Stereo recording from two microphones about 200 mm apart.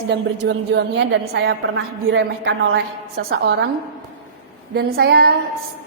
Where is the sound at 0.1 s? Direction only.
60° right (ahead or behind).